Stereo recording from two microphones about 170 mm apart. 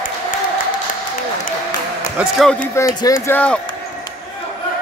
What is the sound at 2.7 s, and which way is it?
Speech, 15° left (ahead or behind).